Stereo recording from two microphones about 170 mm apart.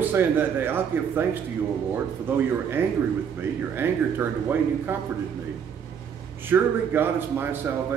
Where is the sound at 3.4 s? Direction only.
15° right (ahead or behind).